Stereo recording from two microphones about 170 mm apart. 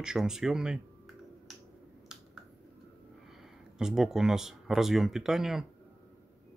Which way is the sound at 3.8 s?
5° right (ahead or behind).